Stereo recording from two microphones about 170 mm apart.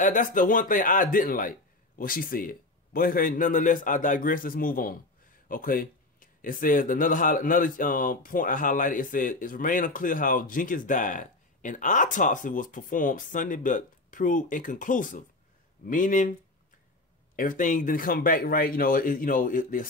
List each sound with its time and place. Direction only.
0.0 s a man's voice: 50° left (ahead or behind)
17.4 s a man's voice: 50° left (ahead or behind)